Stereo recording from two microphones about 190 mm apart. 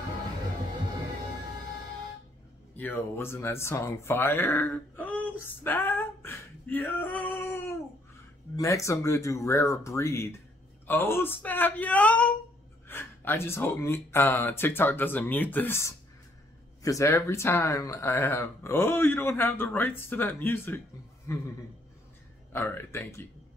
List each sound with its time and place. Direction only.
2.8 s speech: 10° left (ahead or behind)
5.4 s a sound: 10° left (ahead or behind)
8.5 s speech: 15° left (ahead or behind)
10.9 s a sound: 10° left (ahead or behind)
12.8 s speech: 10° left (ahead or behind)
22.5 s speech: 10° left (ahead or behind)